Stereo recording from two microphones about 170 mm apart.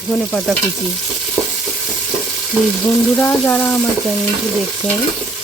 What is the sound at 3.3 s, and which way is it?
Speech, 5° left (ahead or behind).